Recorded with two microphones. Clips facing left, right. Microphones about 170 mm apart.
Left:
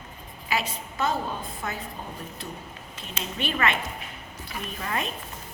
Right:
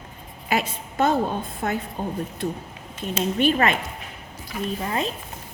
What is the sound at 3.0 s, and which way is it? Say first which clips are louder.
Speech: right 11 dB; 45° right (ahead or behind).